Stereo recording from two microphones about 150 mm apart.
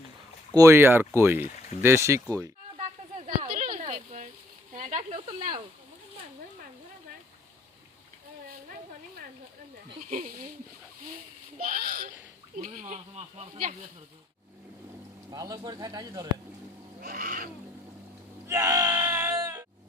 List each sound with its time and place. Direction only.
0.5 s speech: 20° right (ahead or behind)
2.7 s a sound: 40° right (ahead or behind)
3.8 s a sound: 50° right (ahead or behind)
4.8 s speech: 50° right (ahead or behind)
10.1 s wild animals: 60° right (ahead or behind)
11.0 s speech: 60° right (ahead or behind)
12.5 s speech: 55° right (ahead or behind)
15.3 s speech: 25° right (ahead or behind)
17.0 s wild animals: 70° right (ahead or behind)
18.4 s groan: 20° right (ahead or behind)